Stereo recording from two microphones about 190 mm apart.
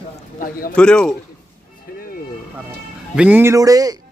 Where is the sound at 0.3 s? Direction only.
45° left (ahead or behind).